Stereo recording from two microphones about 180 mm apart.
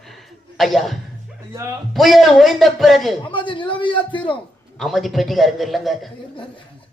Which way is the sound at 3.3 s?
25° left (ahead or behind).